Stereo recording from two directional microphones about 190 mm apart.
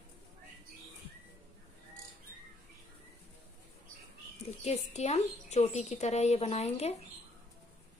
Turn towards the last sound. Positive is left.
turn(degrees=35)  # may be behind; listen again after turning